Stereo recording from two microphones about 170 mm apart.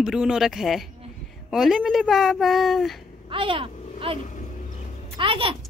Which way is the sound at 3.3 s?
30° right (ahead or behind).